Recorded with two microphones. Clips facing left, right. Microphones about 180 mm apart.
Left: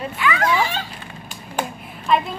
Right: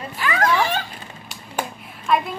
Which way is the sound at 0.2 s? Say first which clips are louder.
Even; 40° right (ahead or behind).